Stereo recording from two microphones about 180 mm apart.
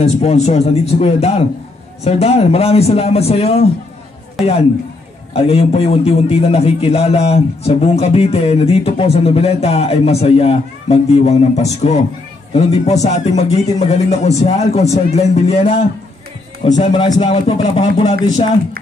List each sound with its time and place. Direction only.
0.0 s a man's voice: 35° left (ahead or behind)
4.4 s a man's voice: centre (ahead or behind)
5.3 s a man's voice: 35° left (ahead or behind)
16.8 s speech: 30° left (ahead or behind)